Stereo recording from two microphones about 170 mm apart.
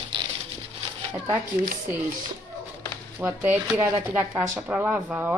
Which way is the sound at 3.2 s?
15° right (ahead or behind).